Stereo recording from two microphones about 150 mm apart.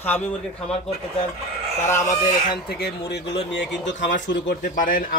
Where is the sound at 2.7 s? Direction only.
90° left.